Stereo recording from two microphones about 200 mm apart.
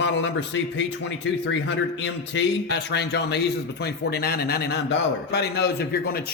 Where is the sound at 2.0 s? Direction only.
60° left (ahead or behind).